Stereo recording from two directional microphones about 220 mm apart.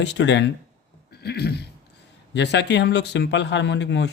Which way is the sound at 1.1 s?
45° left (ahead or behind).